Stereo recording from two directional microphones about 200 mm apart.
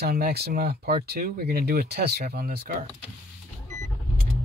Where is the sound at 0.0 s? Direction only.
50° right (ahead or behind).